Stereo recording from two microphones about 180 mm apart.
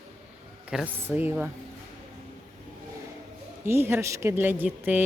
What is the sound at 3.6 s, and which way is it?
Speech, 15° right (ahead or behind).